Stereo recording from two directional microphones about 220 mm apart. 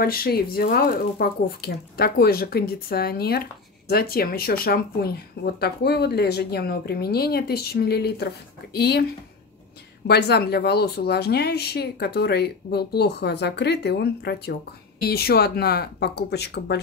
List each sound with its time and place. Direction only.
0.0 s speech: 45° left (ahead or behind)
10.0 s speech: 45° left (ahead or behind)